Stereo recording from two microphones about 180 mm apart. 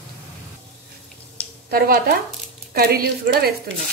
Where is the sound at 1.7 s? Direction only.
55° right (ahead or behind).